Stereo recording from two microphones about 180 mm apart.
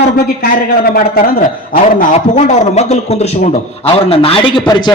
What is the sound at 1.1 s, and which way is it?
A man's voice, 50° left (ahead or behind).